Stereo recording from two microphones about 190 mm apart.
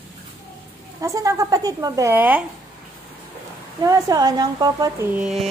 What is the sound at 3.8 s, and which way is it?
A woman's voice, 20° right (ahead or behind).